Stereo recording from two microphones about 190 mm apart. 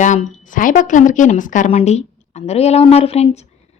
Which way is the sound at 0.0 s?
40° left (ahead or behind).